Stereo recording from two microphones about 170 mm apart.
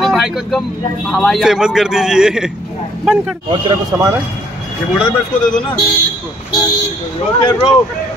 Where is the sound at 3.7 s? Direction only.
20° right (ahead or behind).